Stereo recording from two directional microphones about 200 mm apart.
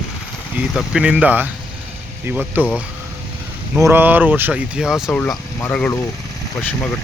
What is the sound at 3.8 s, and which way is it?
Speech, 10° right (ahead or behind).